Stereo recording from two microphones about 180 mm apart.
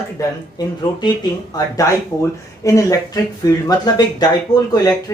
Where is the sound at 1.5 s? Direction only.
15° left (ahead or behind).